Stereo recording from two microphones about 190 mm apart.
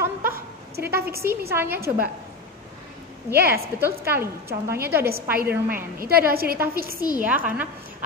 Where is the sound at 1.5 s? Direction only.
10° right (ahead or behind).